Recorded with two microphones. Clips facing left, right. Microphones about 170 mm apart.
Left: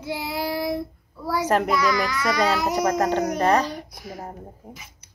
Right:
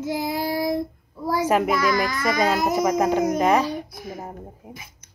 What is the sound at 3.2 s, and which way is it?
Speech, centre (ahead or behind).